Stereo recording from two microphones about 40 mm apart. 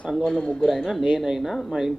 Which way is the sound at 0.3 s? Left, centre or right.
Left.